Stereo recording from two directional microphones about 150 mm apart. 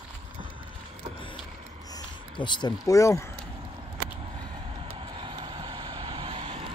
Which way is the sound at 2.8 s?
20° left (ahead or behind).